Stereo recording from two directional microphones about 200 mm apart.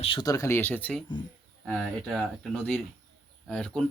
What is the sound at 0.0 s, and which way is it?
A man's voice, 25° left (ahead or behind).